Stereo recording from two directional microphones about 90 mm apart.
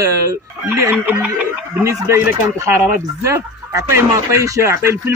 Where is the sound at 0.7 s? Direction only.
20° right (ahead or behind).